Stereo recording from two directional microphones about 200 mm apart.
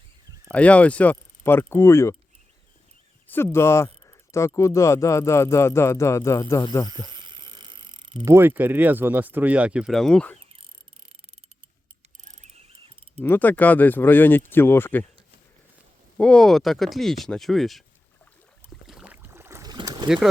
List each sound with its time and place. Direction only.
0.4 s speech: 5° left (ahead or behind)
3.2 s speech: 10° left (ahead or behind)
6.8 s speech: 20° right (ahead or behind); by 10.3 s 5° left (ahead or behind)
12.2 s cricket: 35° right (ahead or behind)
13.2 s speech: 10° left (ahead or behind)
16.1 s speech: 5° left (ahead or behind)
18.9 s boat: 5° right (ahead or behind); by 20.1 s 20° right (ahead or behind)
20.1 s speech: 5° right (ahead or behind)